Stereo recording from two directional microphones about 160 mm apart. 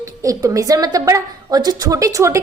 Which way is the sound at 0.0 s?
20° right (ahead or behind).